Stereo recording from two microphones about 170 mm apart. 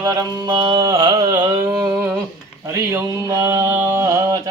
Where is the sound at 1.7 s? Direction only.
20° right (ahead or behind).